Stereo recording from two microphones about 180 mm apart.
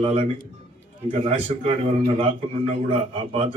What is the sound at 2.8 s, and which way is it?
Speech, 30° right (ahead or behind).